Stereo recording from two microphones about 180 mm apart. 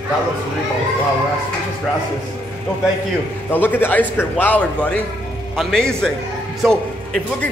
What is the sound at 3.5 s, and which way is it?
A man's voice, 10° left (ahead or behind).